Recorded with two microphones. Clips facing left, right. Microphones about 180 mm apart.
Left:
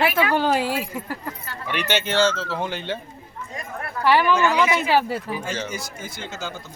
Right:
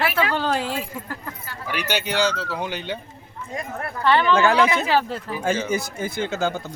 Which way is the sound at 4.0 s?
10° left (ahead or behind).